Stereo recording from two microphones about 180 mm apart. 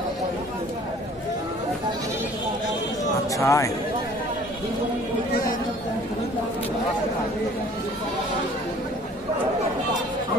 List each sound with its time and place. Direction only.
3.3 s speech: 15° left (ahead or behind)
5.3 s speech: 55° left (ahead or behind)